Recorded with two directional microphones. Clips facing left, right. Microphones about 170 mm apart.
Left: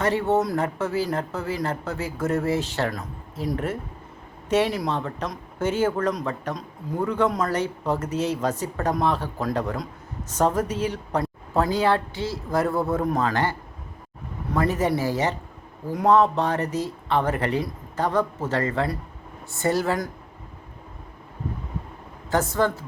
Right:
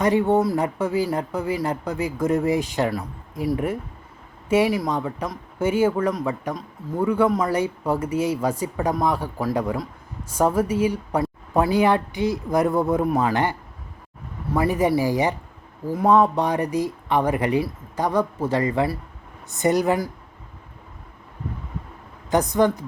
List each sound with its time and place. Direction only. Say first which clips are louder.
0.0 s speech: right 3 dB; 15° right (ahead or behind)
22.3 s speech: right 3 dB; 15° right (ahead or behind)